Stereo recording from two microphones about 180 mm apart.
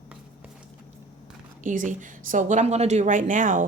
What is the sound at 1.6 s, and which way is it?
A woman's voice, 45° right (ahead or behind).